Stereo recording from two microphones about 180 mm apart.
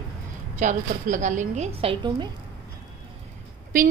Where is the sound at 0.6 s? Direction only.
45° right (ahead or behind); by 2.2 s 30° right (ahead or behind).